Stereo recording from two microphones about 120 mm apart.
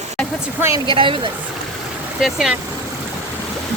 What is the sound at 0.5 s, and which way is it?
Speech, 20° right (ahead or behind).